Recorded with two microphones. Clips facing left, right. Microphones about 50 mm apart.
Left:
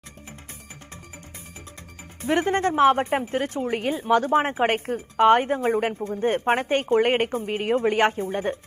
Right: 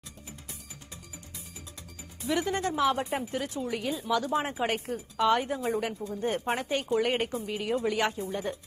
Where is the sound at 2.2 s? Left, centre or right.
Left.